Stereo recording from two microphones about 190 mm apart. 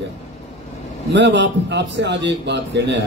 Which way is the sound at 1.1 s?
65° right (ahead or behind).